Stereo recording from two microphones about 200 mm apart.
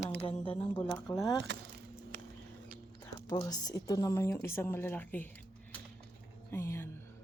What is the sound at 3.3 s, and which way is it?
Speech, 20° left (ahead or behind).